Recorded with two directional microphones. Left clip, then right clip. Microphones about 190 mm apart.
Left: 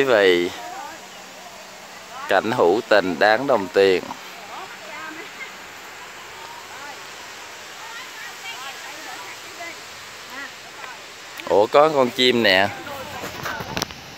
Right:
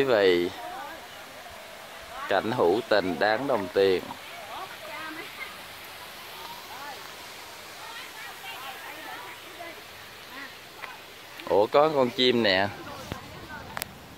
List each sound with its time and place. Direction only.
0.0 s speech: 10° left (ahead or behind)
2.2 s speech: 15° left (ahead or behind)
11.4 s speech: 10° left (ahead or behind)